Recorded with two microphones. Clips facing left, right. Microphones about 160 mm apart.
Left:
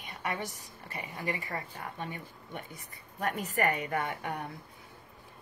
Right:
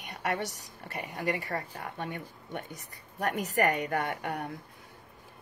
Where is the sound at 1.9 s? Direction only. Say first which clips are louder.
Right 3 dB; 60° right (ahead or behind).